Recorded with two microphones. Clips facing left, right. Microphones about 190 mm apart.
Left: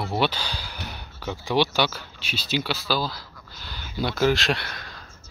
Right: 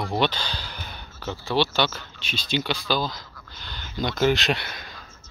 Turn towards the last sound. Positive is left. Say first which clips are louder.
# even
turn(degrees=0)  # may be behind; listen again after turning